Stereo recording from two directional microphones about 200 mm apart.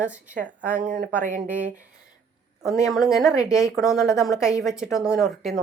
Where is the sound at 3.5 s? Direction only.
15° left (ahead or behind).